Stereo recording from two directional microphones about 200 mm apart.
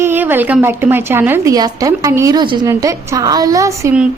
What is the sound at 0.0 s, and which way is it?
A woman's voice, 10° right (ahead or behind).